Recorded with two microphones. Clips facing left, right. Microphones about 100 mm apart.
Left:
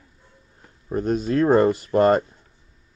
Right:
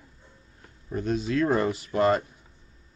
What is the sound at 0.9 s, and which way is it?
Speech, 45° left (ahead or behind).